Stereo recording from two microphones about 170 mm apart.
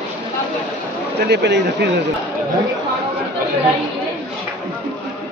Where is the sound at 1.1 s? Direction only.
75° right (ahead or behind).